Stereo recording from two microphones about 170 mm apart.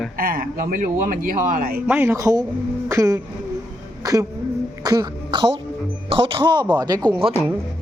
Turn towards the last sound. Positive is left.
turn(degrees=-30)  # may be behind; listen again after turning